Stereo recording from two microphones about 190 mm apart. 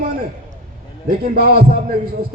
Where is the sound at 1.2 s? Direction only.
50° right (ahead or behind).